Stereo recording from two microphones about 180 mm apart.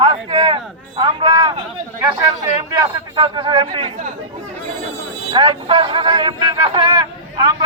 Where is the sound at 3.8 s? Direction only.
40° right (ahead or behind).